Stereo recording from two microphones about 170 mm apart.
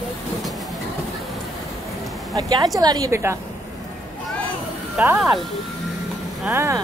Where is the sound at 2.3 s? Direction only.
25° right (ahead or behind).